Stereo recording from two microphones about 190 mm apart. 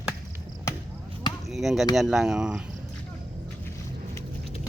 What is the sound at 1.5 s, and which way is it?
Speech, centre (ahead or behind).